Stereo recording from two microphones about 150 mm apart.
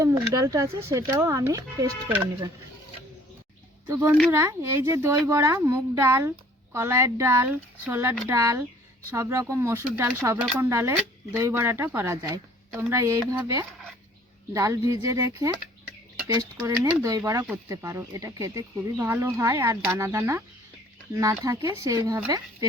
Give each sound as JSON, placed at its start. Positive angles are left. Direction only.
{"t": 0.3, "sound": "speech", "side_deg": -20}
{"t": 3.8, "sound": "speech", "side_deg": -15}